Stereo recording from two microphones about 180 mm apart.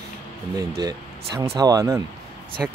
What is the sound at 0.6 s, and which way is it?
Speech, 20° right (ahead or behind).